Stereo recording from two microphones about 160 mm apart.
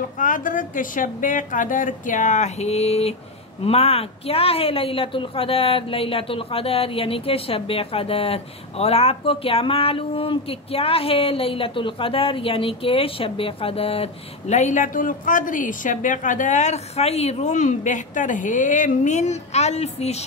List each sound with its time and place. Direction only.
0.2 s a woman's voice: 55° left (ahead or behind)